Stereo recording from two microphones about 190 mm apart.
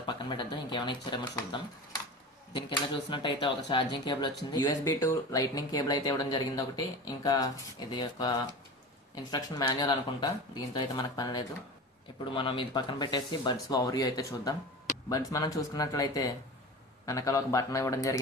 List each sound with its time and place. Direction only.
0.0 s speech: 25° left (ahead or behind)